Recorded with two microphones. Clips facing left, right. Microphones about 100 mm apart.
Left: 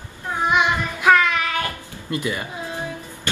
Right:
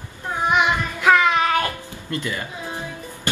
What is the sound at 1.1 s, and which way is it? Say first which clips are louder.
Child singing: right 1 dB; 20° right (ahead or behind).